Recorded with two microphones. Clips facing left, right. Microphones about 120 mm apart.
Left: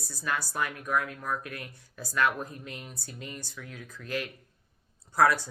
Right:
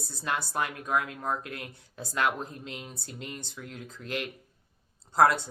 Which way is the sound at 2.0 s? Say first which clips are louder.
Left 1 dB; 20° right (ahead or behind).